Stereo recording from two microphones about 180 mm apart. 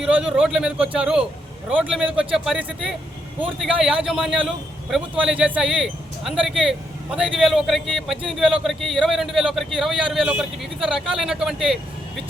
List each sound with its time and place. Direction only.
0.0 s speech: 5° right (ahead or behind)